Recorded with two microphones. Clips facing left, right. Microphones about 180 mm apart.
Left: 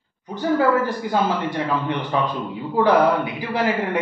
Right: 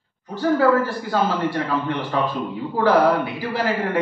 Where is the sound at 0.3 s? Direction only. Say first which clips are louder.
Right 1 dB; 15° left (ahead or behind).